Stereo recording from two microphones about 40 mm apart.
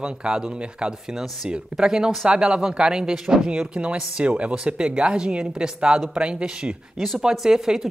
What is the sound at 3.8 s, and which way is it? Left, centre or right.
Speech, right.